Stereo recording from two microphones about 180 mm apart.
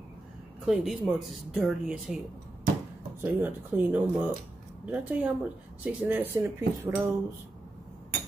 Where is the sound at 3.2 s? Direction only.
10° right (ahead or behind).